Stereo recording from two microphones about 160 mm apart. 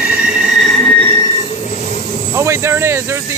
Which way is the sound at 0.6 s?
5° left (ahead or behind).